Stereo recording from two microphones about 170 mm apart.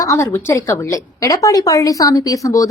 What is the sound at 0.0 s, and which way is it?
A woman's voice, 15° left (ahead or behind).